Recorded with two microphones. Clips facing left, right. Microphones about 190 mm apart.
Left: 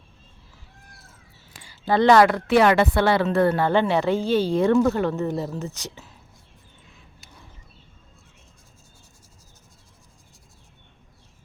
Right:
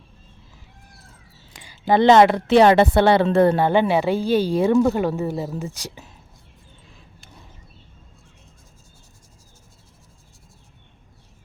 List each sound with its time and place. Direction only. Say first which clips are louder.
1.5 s speech: right 3 dB; 15° right (ahead or behind)